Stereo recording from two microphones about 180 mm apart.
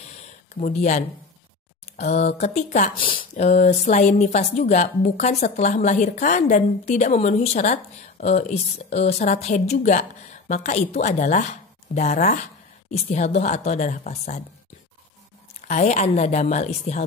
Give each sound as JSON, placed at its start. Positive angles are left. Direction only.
{"t": 0.0, "sound": "a sound", "side_deg": 40}
{"t": 2.0, "sound": "speech", "side_deg": 35}
{"t": 15.6, "sound": "speech", "side_deg": 40}